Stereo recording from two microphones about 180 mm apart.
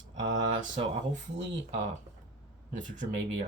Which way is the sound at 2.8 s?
45° right (ahead or behind).